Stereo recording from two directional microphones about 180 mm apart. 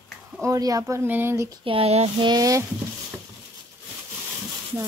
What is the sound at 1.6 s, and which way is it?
Speech, 30° right (ahead or behind).